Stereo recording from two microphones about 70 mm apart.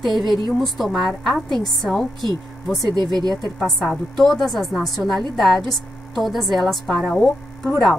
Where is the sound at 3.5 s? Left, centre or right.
Centre.